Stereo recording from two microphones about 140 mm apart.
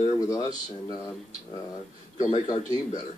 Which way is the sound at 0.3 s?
25° left (ahead or behind).